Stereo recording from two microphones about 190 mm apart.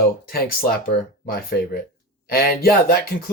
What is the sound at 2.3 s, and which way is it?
Speech, 55° left (ahead or behind).